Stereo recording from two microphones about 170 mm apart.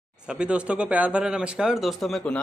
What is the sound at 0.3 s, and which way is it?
A man's voice, 5° right (ahead or behind).